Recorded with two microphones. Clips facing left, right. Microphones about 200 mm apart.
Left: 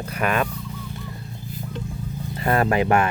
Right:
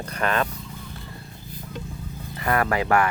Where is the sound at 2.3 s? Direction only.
25° left (ahead or behind).